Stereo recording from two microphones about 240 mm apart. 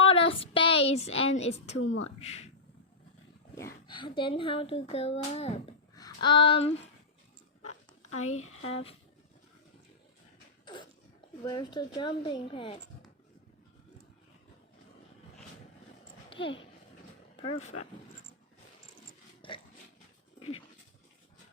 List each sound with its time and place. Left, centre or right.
0.0 s a sound: left
1.8 s speech: left
2.1 s speech: left
3.8 s speech: centre
8.3 s speech: left
8.6 s speech: left
11.4 s speech: centre
16.3 s a child's voice: left
19.4 s a sound: left